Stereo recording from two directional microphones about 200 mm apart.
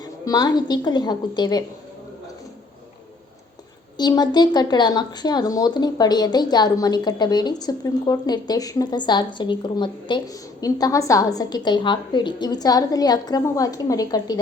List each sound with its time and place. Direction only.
0.0 s speech: 20° left (ahead or behind)
3.9 s speech: 20° left (ahead or behind)